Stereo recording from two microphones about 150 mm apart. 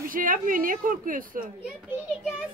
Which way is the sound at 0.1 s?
65° right (ahead or behind).